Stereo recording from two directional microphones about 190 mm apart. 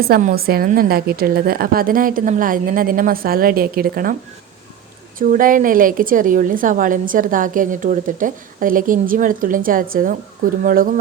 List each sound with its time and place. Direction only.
0.0 s a woman's voice: 50° right (ahead or behind)
5.2 s a woman's voice: 45° right (ahead or behind)